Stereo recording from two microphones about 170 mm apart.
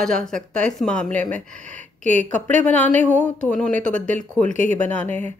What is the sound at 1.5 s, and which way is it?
Speech, 45° right (ahead or behind).